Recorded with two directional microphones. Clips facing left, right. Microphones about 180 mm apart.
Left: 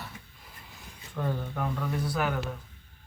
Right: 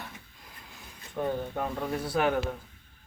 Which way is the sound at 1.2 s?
20° right (ahead or behind).